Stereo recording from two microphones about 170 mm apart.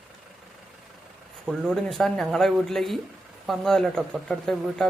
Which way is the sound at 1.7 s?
Centre (ahead or behind).